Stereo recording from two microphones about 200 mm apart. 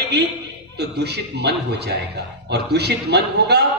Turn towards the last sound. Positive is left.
turn(degrees=-55)  # may be behind; listen again after turning